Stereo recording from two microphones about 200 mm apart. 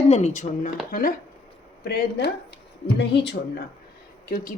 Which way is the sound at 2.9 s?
60° left (ahead or behind).